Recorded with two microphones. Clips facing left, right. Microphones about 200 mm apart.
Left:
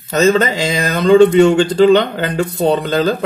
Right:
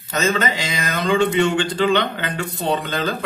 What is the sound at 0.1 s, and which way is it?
Speech, 35° left (ahead or behind).